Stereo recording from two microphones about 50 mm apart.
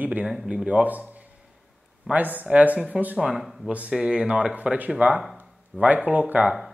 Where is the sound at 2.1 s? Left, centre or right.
Right.